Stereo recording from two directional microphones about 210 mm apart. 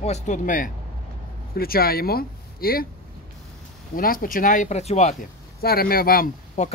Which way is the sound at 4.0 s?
45° left (ahead or behind).